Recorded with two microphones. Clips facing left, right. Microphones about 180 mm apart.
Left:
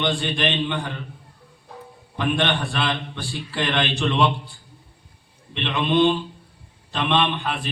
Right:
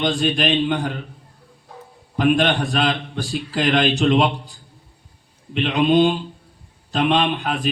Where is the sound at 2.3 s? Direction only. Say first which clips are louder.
Right 1 dB; 40° right (ahead or behind).